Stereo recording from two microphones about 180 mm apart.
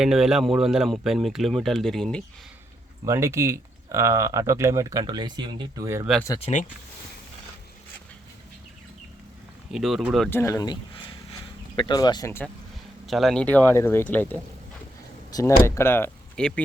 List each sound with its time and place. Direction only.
0.0 s speech: centre (ahead or behind)
3.0 s speech: 15° right (ahead or behind)
6.4 s speech: 40° left (ahead or behind)
9.7 s speech: centre (ahead or behind)
10.2 s speech: 15° left (ahead or behind)
11.8 s speech: 25° left (ahead or behind)
13.1 s speech: centre (ahead or behind)